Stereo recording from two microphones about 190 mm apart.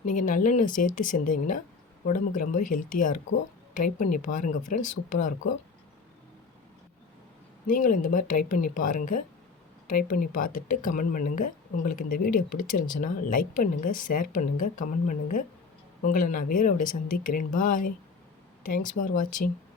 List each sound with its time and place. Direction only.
0.0 s speech: 45° left (ahead or behind)
7.7 s speech: 45° left (ahead or behind)